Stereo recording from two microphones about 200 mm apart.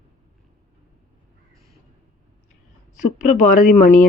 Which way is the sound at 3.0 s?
40° left (ahead or behind).